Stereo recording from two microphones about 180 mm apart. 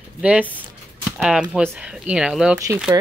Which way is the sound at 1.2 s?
5° right (ahead or behind).